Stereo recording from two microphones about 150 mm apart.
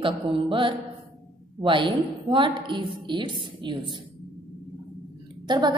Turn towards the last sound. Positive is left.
turn(degrees=-30)  # may be behind; listen again after turning